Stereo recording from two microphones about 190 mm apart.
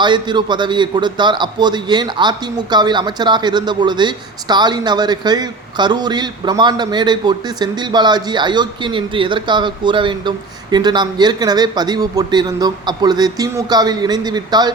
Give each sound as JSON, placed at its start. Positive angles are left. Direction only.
{"t": 0.0, "sound": "a man's voice", "side_deg": -25}